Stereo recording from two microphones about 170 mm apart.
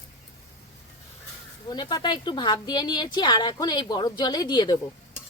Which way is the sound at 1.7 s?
25° left (ahead or behind).